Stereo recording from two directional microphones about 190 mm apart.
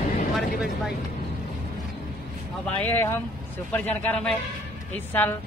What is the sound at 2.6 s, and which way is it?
Speech, 10° left (ahead or behind).